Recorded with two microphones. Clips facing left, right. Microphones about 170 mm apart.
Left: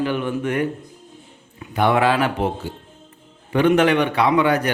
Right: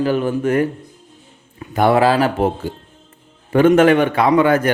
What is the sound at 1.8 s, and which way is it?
Speech, 35° right (ahead or behind).